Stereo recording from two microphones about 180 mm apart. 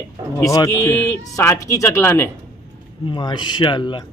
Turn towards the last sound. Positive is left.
turn(degrees=25)  # may be behind; listen again after turning